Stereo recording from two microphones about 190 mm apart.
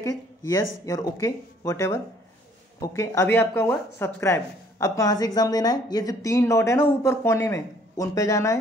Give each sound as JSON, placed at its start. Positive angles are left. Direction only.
{"t": 0.0, "sound": "speech", "side_deg": 15}